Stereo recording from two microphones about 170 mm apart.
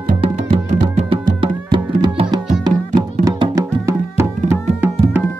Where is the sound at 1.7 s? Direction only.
25° right (ahead or behind).